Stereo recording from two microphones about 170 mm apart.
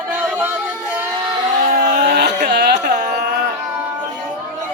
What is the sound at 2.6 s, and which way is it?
Music, 85° right.